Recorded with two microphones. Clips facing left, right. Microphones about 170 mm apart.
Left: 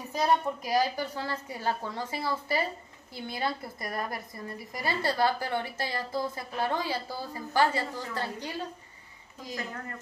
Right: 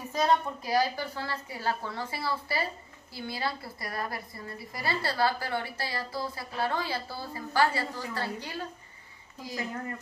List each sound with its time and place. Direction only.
0.1 s a woman's voice: 15° left (ahead or behind)